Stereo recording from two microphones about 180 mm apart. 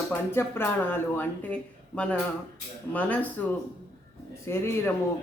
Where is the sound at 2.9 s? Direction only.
10° left (ahead or behind).